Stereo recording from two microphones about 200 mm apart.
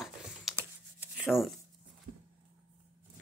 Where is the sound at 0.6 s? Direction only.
5° right (ahead or behind).